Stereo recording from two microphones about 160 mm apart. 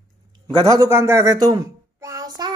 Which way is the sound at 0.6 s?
20° right (ahead or behind).